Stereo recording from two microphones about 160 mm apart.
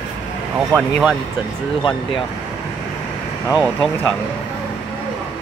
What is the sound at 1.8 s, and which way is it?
Speech, 30° left (ahead or behind).